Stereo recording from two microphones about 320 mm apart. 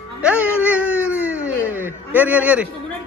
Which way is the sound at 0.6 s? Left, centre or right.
Centre.